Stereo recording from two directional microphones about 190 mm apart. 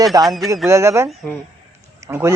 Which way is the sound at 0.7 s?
15° right (ahead or behind).